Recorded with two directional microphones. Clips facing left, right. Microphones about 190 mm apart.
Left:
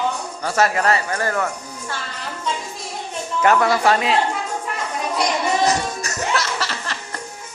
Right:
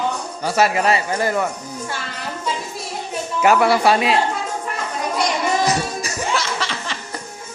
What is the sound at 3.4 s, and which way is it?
Speech, 10° right (ahead or behind).